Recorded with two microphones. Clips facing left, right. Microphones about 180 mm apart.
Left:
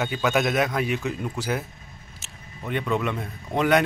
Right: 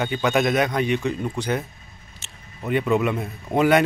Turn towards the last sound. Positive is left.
turn(degrees=-5)  # may be behind; listen again after turning